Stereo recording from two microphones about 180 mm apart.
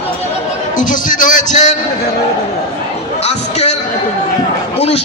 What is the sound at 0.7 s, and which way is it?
A man's voice, 45° left (ahead or behind).